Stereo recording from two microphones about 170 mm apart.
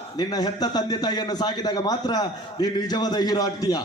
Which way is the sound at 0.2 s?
25° left (ahead or behind).